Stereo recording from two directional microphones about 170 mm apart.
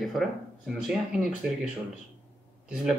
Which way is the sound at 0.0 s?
Centre (ahead or behind).